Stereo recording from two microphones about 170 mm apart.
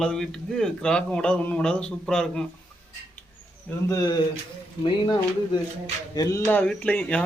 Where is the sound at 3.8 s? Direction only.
20° left (ahead or behind).